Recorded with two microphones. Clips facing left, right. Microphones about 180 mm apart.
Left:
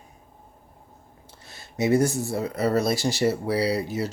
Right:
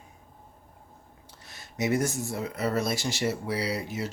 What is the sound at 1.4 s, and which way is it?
Speech, 30° left (ahead or behind).